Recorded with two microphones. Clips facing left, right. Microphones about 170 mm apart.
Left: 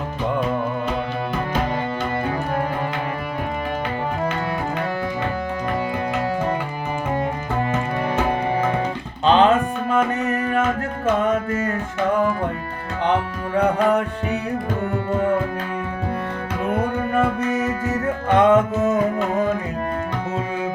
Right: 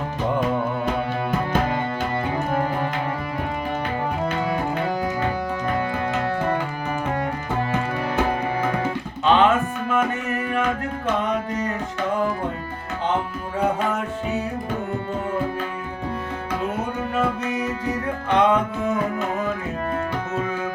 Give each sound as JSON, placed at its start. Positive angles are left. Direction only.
{"t": 9.2, "sound": "music", "side_deg": 35}
{"t": 13.6, "sound": "tabla", "side_deg": 65}
{"t": 17.2, "sound": "music", "side_deg": 50}